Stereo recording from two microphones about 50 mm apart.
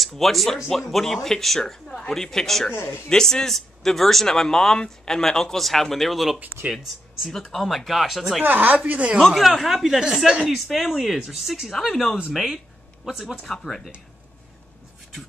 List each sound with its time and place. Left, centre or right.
0.2 s speech: centre
2.7 s speech: left
3.1 s speech: centre
8.4 s speech: right
8.7 s speech: right
9.3 s speech: centre
11.7 s speech: centre
13.5 s speech: centre